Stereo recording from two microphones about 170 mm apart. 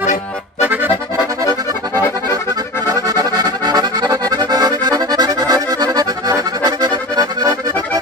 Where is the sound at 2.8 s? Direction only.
20° right (ahead or behind).